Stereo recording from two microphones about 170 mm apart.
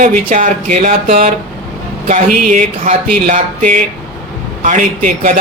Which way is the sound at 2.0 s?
50° right (ahead or behind).